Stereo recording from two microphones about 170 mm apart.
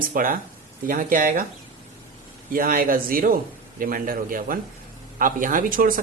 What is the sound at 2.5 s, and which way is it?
A man's voice, 55° right (ahead or behind).